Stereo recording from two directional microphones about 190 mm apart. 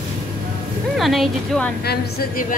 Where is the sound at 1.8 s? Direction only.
55° left (ahead or behind).